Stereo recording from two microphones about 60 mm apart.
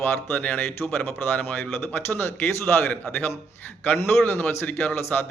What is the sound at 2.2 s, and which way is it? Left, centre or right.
A man's voice, left.